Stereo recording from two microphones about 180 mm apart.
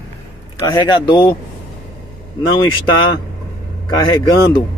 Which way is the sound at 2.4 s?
25° left (ahead or behind).